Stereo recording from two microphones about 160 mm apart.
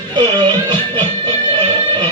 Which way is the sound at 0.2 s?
30° right (ahead or behind).